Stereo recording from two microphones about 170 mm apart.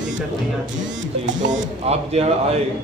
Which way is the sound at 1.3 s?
90° right.